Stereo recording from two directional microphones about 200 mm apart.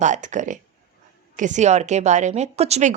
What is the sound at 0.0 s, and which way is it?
A woman's voice, 40° right (ahead or behind).